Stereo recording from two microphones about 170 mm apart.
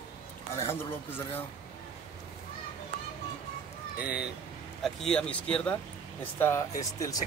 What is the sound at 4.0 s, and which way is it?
Speech, 10° right (ahead or behind).